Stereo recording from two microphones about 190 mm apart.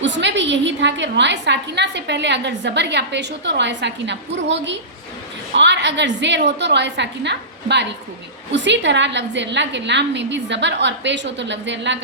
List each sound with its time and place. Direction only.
0.0 s a woman's voice: 70° right (ahead or behind)